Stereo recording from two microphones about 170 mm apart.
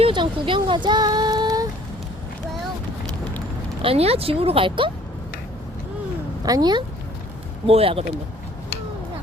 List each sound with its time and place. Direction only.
0.0 s a sound: 30° right (ahead or behind)
3.8 s speech: 35° right (ahead or behind)
6.4 s speech: 25° right (ahead or behind)
7.7 s speech: 35° right (ahead or behind)